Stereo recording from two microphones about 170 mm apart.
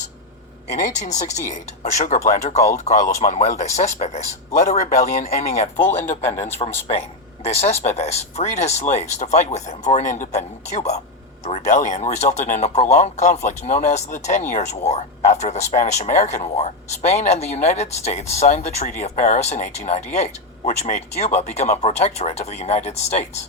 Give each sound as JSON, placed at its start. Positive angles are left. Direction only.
{"t": 0.7, "sound": "speech", "side_deg": 45}
{"t": 5.7, "sound": "speech", "side_deg": 10}
{"t": 6.4, "sound": "speech", "side_deg": 35}
{"t": 7.9, "sound": "speech", "side_deg": 40}